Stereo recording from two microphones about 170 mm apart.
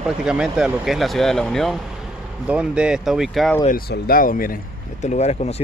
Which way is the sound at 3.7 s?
60° left (ahead or behind).